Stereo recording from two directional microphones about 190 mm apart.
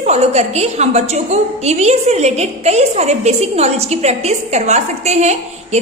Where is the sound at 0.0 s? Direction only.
35° right (ahead or behind).